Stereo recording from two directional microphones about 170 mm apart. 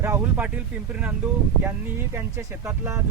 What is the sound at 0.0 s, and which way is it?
Speech, 10° right (ahead or behind).